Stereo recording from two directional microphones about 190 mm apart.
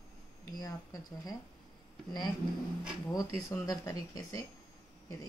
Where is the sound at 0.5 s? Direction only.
20° left (ahead or behind).